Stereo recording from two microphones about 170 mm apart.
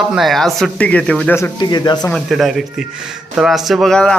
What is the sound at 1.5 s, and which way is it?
Speech, 25° left (ahead or behind).